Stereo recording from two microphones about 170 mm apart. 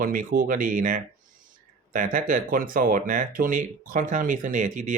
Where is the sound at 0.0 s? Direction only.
55° right (ahead or behind).